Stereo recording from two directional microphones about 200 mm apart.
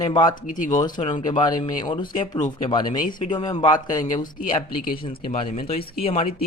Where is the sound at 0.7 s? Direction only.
20° left (ahead or behind).